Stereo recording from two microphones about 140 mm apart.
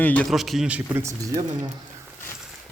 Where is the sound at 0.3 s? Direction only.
Centre (ahead or behind).